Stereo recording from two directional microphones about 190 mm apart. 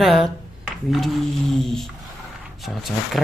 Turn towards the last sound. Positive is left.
turn(degrees=0)  # may be behind; listen again after turning